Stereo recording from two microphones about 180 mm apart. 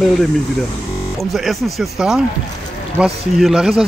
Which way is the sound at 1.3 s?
Centre (ahead or behind).